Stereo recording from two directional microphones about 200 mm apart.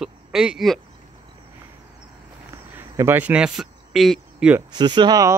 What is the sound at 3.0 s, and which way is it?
Speech, 10° right (ahead or behind).